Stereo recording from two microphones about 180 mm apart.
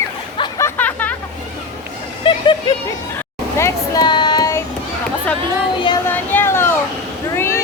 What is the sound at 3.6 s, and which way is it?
Child singing, 25° left (ahead or behind).